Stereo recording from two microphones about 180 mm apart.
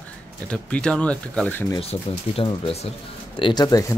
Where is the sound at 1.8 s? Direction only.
30° left (ahead or behind).